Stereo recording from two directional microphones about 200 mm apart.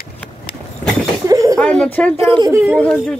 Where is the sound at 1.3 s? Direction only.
15° right (ahead or behind).